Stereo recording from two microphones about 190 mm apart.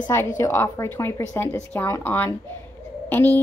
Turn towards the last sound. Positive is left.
turn(degrees=10)  # may be behind; listen again after turning